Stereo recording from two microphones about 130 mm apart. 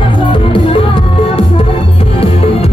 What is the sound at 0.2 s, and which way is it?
Music, 40° left (ahead or behind).